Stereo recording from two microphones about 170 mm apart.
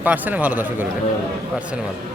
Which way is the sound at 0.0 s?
10° right (ahead or behind).